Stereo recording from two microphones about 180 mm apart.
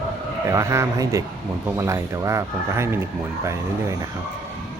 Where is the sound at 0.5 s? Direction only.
15° right (ahead or behind).